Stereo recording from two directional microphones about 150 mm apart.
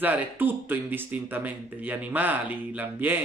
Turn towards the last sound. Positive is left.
turn(degrees=-10)  # may be behind; listen again after turning